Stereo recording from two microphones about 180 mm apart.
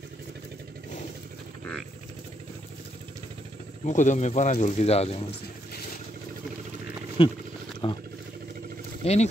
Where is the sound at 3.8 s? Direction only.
40° left (ahead or behind).